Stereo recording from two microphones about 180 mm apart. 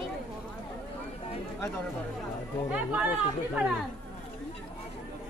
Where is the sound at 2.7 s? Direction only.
10° right (ahead or behind).